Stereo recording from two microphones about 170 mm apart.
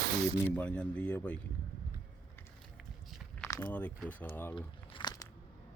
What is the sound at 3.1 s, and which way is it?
Walk, centre (ahead or behind).